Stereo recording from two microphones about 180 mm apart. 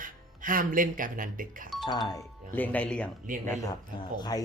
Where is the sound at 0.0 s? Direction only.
50° right (ahead or behind).